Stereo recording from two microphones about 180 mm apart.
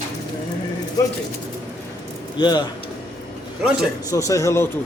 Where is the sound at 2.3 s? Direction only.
25° left (ahead or behind).